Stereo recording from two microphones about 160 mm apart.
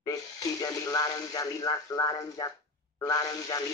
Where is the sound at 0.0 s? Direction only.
20° left (ahead or behind).